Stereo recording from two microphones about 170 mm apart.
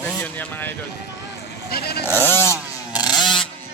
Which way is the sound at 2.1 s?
15° right (ahead or behind).